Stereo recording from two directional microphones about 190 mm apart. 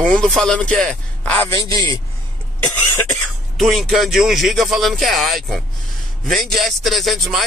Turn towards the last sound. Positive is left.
turn(degrees=0)  # may be behind; listen again after turning